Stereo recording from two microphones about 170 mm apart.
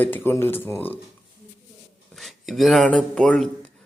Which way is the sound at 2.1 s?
Centre (ahead or behind).